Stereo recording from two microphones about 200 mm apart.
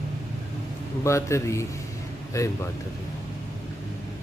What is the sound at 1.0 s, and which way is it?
Speech, 15° left (ahead or behind).